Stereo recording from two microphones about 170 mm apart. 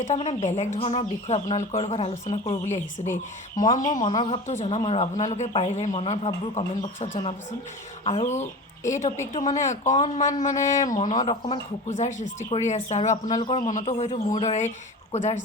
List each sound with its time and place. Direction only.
0.0 s speech: 40° left (ahead or behind)
4.2 s speech: 35° left (ahead or behind)
13.3 s speech: 30° left (ahead or behind)